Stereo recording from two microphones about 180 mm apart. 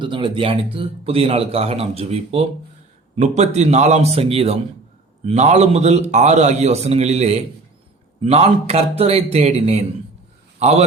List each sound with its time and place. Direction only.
0.0 s a man's voice: 25° right (ahead or behind)